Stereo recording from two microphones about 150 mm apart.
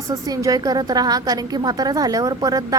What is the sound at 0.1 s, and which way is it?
A woman's voice, 25° right (ahead or behind).